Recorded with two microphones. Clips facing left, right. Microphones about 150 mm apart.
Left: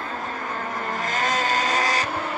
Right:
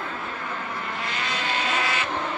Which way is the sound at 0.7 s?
45° left (ahead or behind).